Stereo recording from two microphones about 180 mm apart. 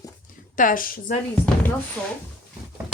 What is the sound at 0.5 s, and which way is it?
Speech, 50° left (ahead or behind).